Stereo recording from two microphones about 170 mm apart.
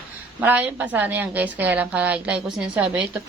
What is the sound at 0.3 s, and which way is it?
A woman's voice, 10° right (ahead or behind).